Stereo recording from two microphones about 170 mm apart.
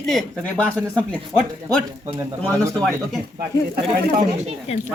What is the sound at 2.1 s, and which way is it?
Speech, 15° right (ahead or behind).